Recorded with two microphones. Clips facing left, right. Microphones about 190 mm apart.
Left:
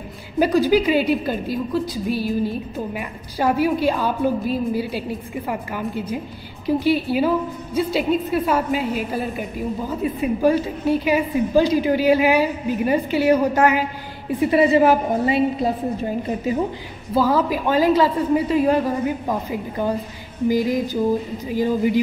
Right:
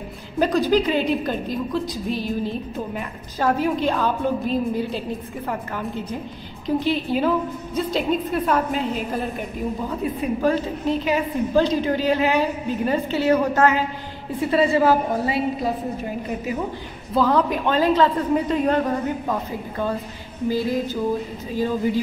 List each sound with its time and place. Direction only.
0.4 s a woman's voice: 10° left (ahead or behind)
17.1 s a woman's voice: 5° left (ahead or behind)
20.4 s a woman's voice: 15° left (ahead or behind)